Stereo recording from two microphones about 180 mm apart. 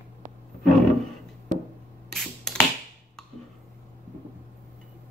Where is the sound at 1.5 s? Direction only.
45° right (ahead or behind).